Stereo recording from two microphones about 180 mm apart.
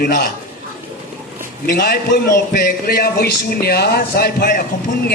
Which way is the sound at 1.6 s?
55° left (ahead or behind).